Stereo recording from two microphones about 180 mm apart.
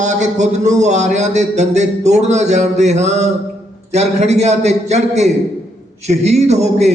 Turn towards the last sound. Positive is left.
turn(degrees=-35)  # may be behind; listen again after turning